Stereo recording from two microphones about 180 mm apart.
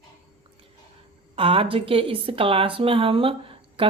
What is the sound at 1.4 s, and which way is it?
Speech, 30° right (ahead or behind).